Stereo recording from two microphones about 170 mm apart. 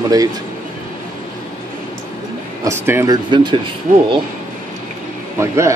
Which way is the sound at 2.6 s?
15° right (ahead or behind).